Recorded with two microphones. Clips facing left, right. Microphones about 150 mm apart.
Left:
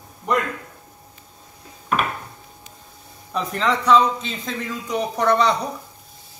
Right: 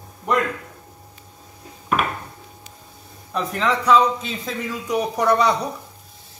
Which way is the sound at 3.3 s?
Centre (ahead or behind).